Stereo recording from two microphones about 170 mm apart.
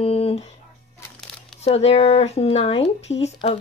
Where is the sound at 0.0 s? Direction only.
35° left (ahead or behind).